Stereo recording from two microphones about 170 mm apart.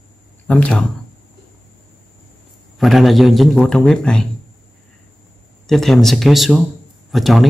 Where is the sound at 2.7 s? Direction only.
Centre (ahead or behind).